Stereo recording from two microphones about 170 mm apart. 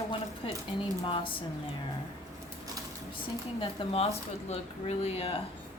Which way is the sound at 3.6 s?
35° left (ahead or behind).